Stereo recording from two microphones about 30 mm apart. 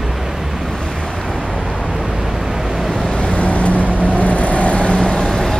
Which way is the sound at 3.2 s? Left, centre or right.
Left.